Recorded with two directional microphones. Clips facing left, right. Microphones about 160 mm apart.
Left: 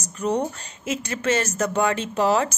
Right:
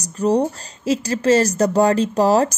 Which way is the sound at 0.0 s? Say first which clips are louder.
Right 6 dB; 35° right (ahead or behind).